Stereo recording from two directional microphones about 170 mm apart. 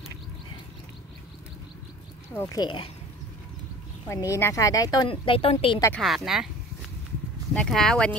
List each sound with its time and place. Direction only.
2.3 s speech: 25° left (ahead or behind)
4.1 s speech: 15° left (ahead or behind); by 5.8 s 35° left (ahead or behind)
5.9 s speech: centre (ahead or behind)
7.5 s speech: 5° left (ahead or behind)